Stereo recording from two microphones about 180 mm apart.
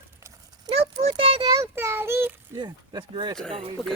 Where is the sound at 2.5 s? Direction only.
25° right (ahead or behind).